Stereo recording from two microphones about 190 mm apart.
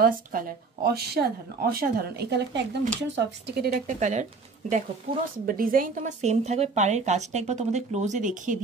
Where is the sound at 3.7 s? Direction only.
40° right (ahead or behind).